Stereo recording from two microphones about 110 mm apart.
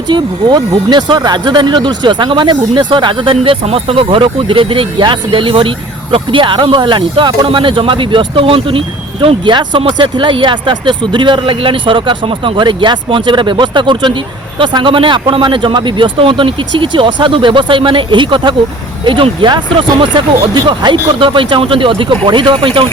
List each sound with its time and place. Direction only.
0.1 s speech: 45° right (ahead or behind)